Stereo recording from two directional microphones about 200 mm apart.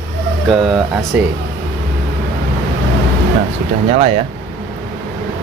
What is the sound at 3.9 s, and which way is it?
Speech, 35° right (ahead or behind).